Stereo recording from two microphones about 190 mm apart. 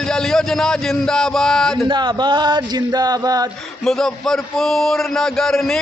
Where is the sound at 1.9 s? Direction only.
25° right (ahead or behind).